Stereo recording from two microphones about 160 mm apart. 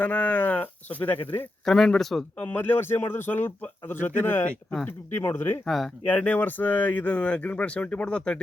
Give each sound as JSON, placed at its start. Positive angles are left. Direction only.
{"t": 0.0, "sound": "a man's voice", "side_deg": 10}
{"t": 5.6, "sound": "a man's voice", "side_deg": 0}